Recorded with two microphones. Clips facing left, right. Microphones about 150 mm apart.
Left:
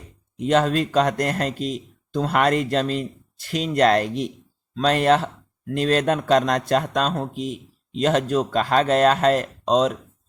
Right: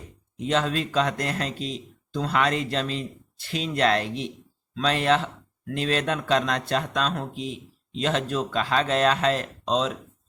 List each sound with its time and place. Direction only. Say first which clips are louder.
0.3 s speech: left 6 dB; 45° left (ahead or behind)